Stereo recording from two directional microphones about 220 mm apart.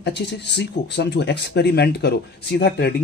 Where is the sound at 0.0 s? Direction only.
50° left (ahead or behind).